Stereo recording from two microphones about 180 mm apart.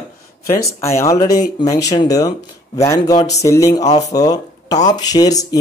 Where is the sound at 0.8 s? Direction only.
15° left (ahead or behind).